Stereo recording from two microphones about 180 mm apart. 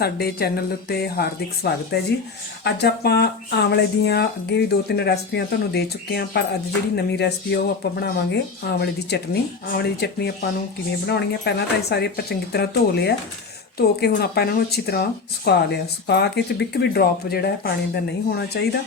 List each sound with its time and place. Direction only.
0.0 s speech: 60° left (ahead or behind)